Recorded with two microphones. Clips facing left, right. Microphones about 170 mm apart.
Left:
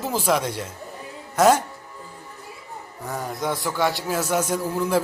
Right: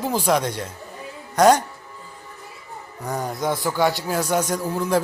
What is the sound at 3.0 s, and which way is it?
Speech, 20° right (ahead or behind).